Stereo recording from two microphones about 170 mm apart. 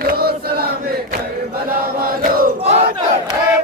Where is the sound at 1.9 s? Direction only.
60° right (ahead or behind).